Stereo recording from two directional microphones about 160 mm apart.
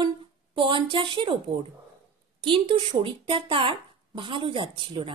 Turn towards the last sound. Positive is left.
turn(degrees=-30)  # may be behind; listen again after turning